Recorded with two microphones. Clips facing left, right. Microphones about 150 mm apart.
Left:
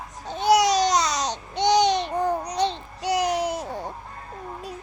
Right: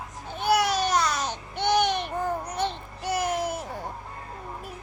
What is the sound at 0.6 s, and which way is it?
Babbling, 80° left.